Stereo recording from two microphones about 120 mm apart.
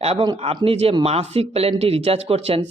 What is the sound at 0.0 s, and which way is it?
Speech, 55° right (ahead or behind).